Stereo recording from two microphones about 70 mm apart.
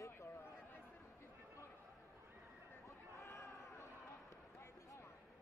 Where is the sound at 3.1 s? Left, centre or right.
Left.